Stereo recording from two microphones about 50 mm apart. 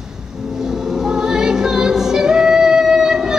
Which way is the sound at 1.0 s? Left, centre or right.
Centre.